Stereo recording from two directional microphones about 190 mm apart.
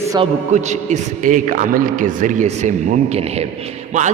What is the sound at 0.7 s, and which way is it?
A man's voice, 40° right (ahead or behind).